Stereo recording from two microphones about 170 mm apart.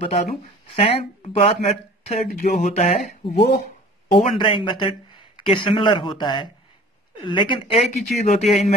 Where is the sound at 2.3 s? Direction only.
45° left (ahead or behind).